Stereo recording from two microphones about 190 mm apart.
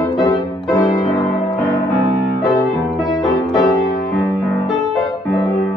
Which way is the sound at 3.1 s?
20° left (ahead or behind).